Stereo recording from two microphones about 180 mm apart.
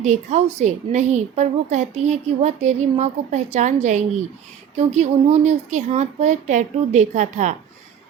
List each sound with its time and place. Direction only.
0.0 s a woman's voice: 40° right (ahead or behind)